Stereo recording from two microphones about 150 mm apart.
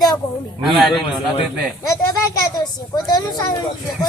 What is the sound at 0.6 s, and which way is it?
Speech, centre (ahead or behind).